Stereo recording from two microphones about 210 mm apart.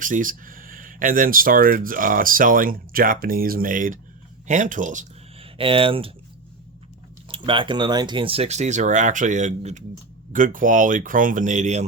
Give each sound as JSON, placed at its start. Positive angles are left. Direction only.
{"t": 0.0, "sound": "speech", "side_deg": -40}
{"t": 7.3, "sound": "speech", "side_deg": -25}